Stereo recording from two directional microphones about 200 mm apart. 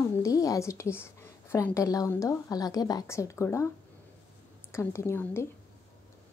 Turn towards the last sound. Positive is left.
turn(degrees=10)  # may be behind; listen again after turning